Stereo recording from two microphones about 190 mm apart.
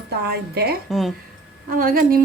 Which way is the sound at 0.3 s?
55° right (ahead or behind).